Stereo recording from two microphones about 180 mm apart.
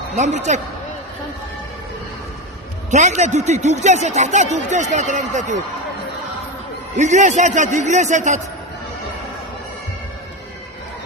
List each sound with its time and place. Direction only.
0.2 s speech: 40° right (ahead or behind)
2.9 s speech: 40° right (ahead or behind)
6.9 s a man's voice: 40° right (ahead or behind)